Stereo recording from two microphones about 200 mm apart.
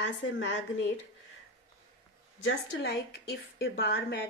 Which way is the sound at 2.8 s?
55° left (ahead or behind).